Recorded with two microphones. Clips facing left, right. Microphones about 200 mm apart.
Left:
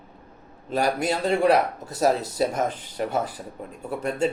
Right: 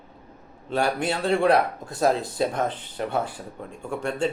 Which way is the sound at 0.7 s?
40° left (ahead or behind).